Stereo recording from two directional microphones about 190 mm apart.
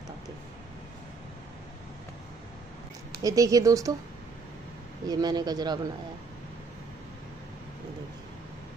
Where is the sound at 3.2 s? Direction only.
20° right (ahead or behind).